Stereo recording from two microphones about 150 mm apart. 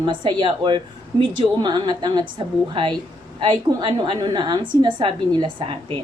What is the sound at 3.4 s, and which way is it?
A woman's voice, 30° right (ahead or behind).